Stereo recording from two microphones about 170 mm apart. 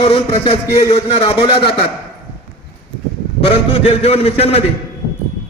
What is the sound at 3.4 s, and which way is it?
A man's voice, 35° left (ahead or behind).